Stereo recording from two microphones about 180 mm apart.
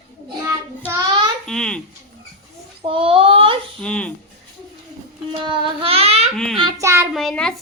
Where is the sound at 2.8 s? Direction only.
30° right (ahead or behind).